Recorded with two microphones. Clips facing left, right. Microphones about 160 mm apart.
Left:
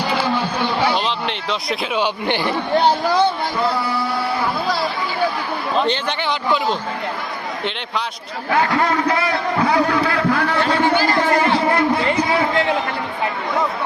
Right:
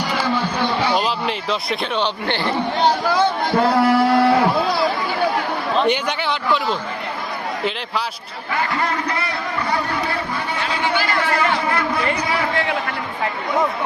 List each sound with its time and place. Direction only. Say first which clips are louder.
0.9 s speech: right 1 dB; 5° right (ahead or behind)
2.2 s speech: left 1 dB; 15° left (ahead or behind)
3.8 s speech: right 7 dB; 90° right
8.5 s a man's voice: left 5 dB; 90° left
9.6 s a sound: left 5 dB; 85° left; by 10.8 s 65° left (ahead or behind)
11.2 s a sound: left 3 dB; 35° left (ahead or behind)